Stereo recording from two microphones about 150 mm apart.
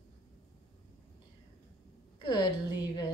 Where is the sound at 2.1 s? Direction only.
30° left (ahead or behind).